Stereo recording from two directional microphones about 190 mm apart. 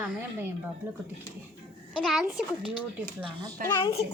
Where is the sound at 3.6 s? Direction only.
20° left (ahead or behind).